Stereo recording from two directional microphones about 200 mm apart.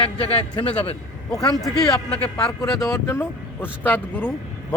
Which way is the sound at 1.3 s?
Centre (ahead or behind).